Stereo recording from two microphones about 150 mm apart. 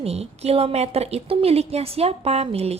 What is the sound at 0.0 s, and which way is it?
A woman's voice, 45° right (ahead or behind).